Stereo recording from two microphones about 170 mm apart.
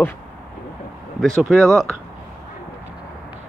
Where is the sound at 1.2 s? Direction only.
Centre (ahead or behind).